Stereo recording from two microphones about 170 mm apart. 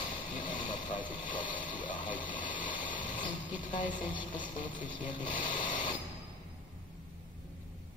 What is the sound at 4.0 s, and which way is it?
Speech, 30° left (ahead or behind).